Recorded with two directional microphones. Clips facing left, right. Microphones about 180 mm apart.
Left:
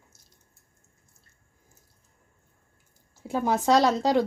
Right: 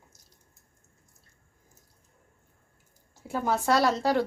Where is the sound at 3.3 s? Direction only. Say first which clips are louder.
Left 3 dB; 15° left (ahead or behind).